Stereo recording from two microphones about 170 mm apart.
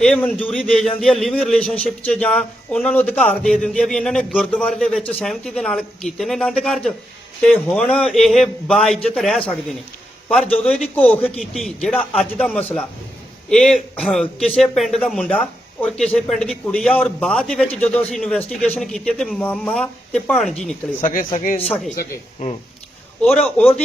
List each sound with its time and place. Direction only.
0.0 s a man's voice: 5° left (ahead or behind)
21.0 s speech: 55° left (ahead or behind)
21.8 s speech: 45° left (ahead or behind)
23.2 s a man's voice: 5° left (ahead or behind)